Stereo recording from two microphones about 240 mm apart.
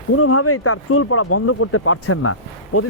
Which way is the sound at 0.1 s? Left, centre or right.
Left.